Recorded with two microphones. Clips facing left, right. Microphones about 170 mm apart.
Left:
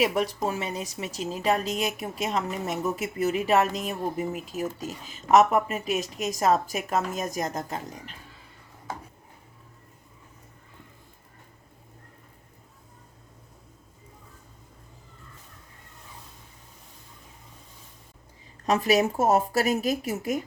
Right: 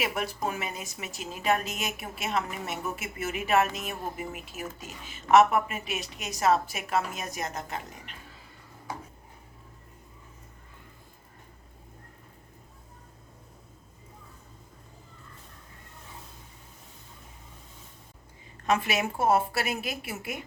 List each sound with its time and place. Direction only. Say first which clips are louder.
0.0 s a woman's voice: left 6 dB; 35° left (ahead or behind)
18.6 s a woman's voice: left 5 dB; 40° left (ahead or behind)